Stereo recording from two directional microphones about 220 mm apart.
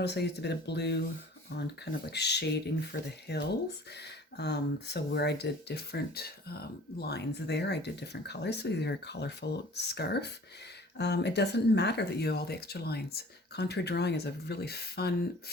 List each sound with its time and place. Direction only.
0.0 s speech: 50° left (ahead or behind)